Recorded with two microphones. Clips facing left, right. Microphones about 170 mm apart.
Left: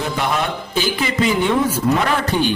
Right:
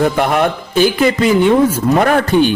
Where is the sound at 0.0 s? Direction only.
55° right (ahead or behind).